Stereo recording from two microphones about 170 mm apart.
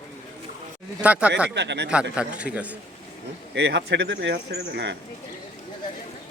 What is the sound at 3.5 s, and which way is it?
Speech, 90° right.